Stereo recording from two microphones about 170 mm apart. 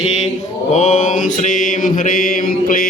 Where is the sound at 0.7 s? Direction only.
45° left (ahead or behind).